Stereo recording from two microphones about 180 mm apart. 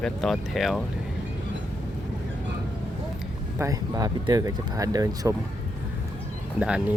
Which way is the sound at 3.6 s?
20° right (ahead or behind).